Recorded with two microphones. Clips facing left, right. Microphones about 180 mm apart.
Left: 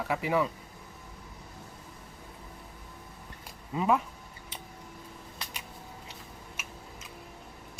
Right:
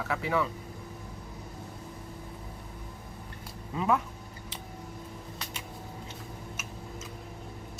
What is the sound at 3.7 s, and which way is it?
Speech, 10° left (ahead or behind).